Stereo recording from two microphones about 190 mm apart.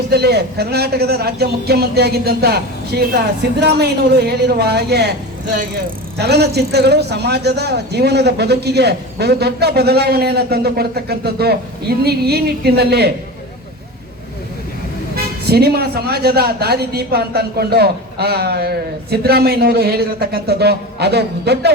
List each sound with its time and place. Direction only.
0.1 s a man's voice: 60° right (ahead or behind)
6.1 s a man's voice: 60° right (ahead or behind)
15.1 s a man's voice: 55° right (ahead or behind)